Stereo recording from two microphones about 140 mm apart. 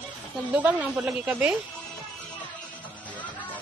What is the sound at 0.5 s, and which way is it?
Speech, 10° right (ahead or behind).